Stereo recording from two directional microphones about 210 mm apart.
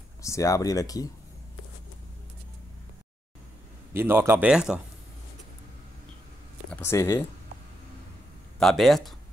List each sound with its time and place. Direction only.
0.2 s speech: 15° left (ahead or behind)
3.9 s speech: 10° right (ahead or behind)
6.7 s speech: 10° left (ahead or behind)
8.5 s speech: centre (ahead or behind)